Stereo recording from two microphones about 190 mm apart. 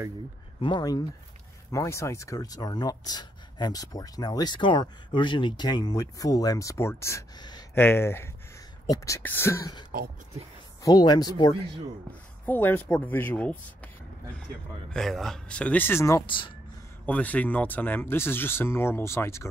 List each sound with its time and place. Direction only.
0.6 s speech: 25° left (ahead or behind)
12.4 s speech: 10° left (ahead or behind)
14.9 s speech: centre (ahead or behind); by 16.5 s 25° left (ahead or behind)
17.0 s speech: 10° left (ahead or behind)